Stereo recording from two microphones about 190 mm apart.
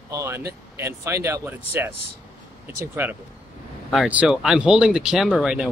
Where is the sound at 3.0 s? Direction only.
10° right (ahead or behind).